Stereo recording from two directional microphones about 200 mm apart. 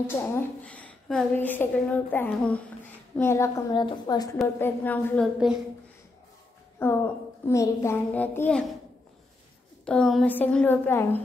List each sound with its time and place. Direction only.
0.2 s a woman's voice: 10° left (ahead or behind)
6.8 s a woman's voice: 10° left (ahead or behind)
9.8 s a woman's voice: 5° left (ahead or behind)